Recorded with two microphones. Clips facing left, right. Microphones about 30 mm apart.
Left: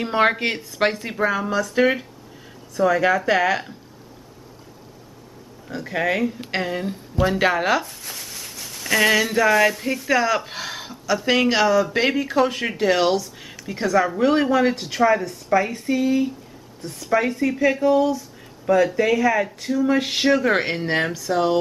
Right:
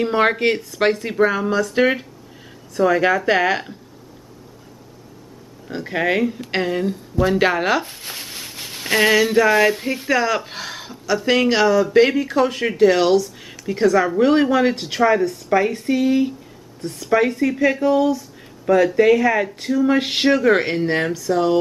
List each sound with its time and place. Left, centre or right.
0.0 s speech: centre
5.7 s speech: centre
7.8 s speech: right
8.5 s a sound: right
9.0 s speech: centre
15.1 s speech: centre
15.5 s speech: centre
20.4 s speech: centre